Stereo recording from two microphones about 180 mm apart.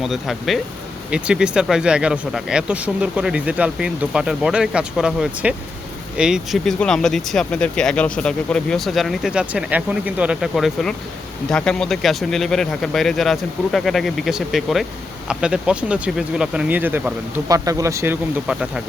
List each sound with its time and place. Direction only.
0.0 s speech: centre (ahead or behind)